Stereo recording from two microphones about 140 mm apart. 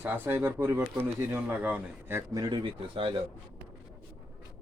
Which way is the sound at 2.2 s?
25° right (ahead or behind).